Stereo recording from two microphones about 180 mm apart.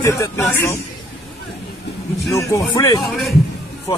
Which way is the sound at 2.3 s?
15° left (ahead or behind).